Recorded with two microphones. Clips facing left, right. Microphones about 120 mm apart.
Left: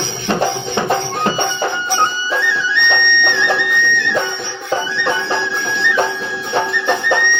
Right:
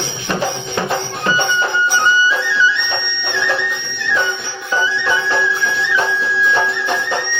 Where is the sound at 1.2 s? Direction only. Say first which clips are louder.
Even; 50° left (ahead or behind).